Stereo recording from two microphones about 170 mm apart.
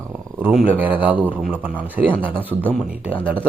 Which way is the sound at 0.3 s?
10° right (ahead or behind).